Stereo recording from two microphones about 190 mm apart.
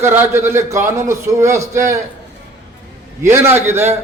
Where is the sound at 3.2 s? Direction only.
15° right (ahead or behind).